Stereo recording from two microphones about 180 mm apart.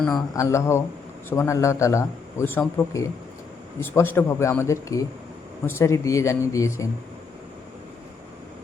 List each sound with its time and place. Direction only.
0.3 s a man's voice: 15° left (ahead or behind)